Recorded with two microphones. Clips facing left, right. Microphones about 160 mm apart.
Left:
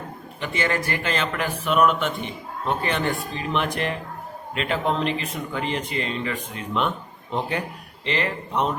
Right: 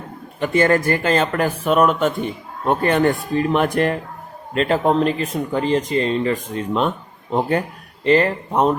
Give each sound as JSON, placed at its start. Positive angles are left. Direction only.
{"t": 0.3, "sound": "speech", "side_deg": -45}
{"t": 8.0, "sound": "speech", "side_deg": -45}